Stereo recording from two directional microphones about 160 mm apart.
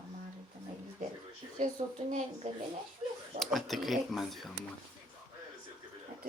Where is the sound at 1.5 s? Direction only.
50° right (ahead or behind).